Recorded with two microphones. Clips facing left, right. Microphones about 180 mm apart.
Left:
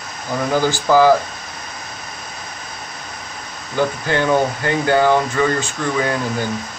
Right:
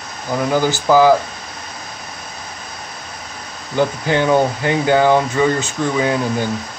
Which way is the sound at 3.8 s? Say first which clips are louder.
Right 2 dB; 15° right (ahead or behind).